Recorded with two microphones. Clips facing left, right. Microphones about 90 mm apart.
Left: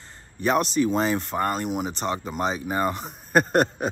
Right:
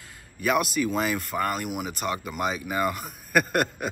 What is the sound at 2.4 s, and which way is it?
Speech, 35° left (ahead or behind).